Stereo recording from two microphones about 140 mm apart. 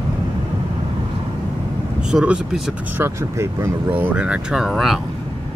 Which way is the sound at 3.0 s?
20° right (ahead or behind).